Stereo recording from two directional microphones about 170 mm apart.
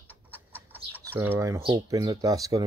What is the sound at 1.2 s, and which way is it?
Speech, 15° right (ahead or behind).